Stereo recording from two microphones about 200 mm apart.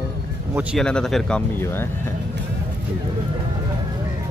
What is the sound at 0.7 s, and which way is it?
Speech, 5° left (ahead or behind).